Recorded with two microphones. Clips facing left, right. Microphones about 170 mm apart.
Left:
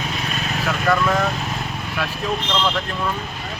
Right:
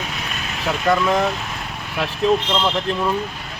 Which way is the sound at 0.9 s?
20° right (ahead or behind).